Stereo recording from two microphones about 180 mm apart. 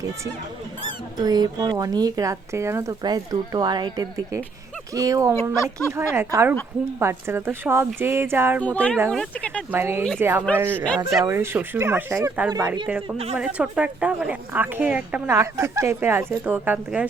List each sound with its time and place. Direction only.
1.2 s a woman's voice: 20° right (ahead or behind)
8.6 s speech: 5° left (ahead or behind)
9.7 s a woman's voice: 15° right (ahead or behind)
13.3 s a woman's voice: 5° right (ahead or behind)